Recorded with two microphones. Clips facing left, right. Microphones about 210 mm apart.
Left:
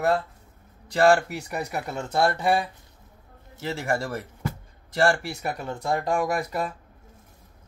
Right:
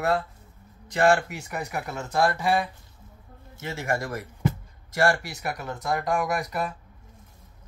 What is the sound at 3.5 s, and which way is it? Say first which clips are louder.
Speech: left 2 dB; 30° left (ahead or behind).